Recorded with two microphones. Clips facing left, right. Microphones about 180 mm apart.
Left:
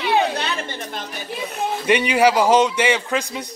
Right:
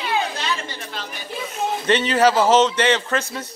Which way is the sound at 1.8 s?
10° left (ahead or behind).